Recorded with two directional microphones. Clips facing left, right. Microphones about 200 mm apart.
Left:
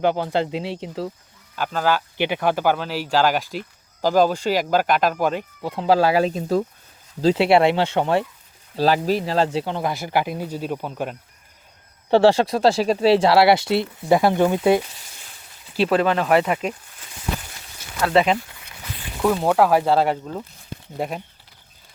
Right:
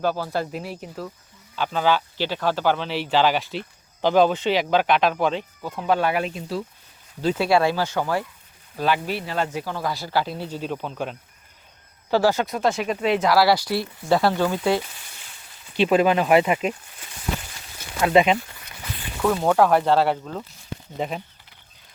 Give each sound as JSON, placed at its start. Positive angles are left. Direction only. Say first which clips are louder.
{"t": 0.0, "sound": "speech", "louder": "left 4 dB", "side_deg": 20}
{"t": 1.5, "sound": "speech", "louder": "even", "side_deg": 5}
{"t": 2.1, "sound": "speech", "louder": "left 3 dB", "side_deg": 15}
{"t": 5.6, "sound": "speech", "louder": "left 5 dB", "side_deg": 30}
{"t": 7.2, "sound": "speech", "louder": "left 4 dB", "side_deg": 30}
{"t": 12.1, "sound": "speech", "louder": "left 5 dB", "side_deg": 30}
{"t": 15.9, "sound": "speech", "louder": "right 1 dB", "side_deg": -10}
{"t": 18.0, "sound": "speech", "louder": "right 1 dB", "side_deg": -15}
{"t": 19.2, "sound": "speech", "louder": "left 1 dB", "side_deg": 5}